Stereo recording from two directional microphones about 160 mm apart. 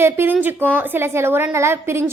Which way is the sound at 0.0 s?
15° right (ahead or behind).